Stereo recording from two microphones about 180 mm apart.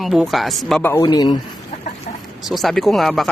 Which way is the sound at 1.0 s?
20° left (ahead or behind).